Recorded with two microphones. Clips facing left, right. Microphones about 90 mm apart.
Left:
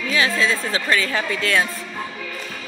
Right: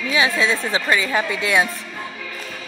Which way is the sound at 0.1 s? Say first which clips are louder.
Right 1 dB; 20° right (ahead or behind).